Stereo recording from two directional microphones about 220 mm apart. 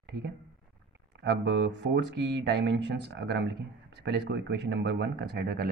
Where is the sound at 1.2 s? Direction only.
50° right (ahead or behind).